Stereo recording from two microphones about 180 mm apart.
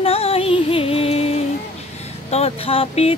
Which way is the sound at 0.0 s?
30° left (ahead or behind).